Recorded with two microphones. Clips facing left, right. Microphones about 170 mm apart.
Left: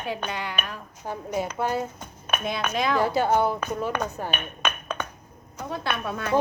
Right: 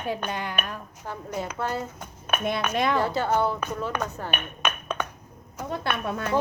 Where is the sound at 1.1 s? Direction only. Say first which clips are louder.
Left 4 dB; 15° left (ahead or behind).